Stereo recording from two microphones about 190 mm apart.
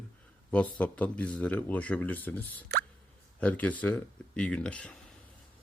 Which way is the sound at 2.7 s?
60° right (ahead or behind).